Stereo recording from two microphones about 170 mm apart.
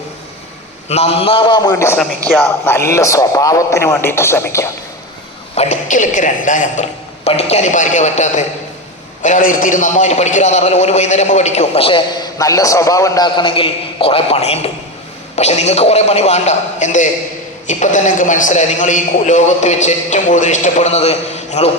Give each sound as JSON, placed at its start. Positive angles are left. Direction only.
{"t": 0.9, "sound": "a man's voice", "side_deg": 40}
{"t": 5.5, "sound": "a man's voice", "side_deg": 45}
{"t": 7.3, "sound": "a man's voice", "side_deg": 40}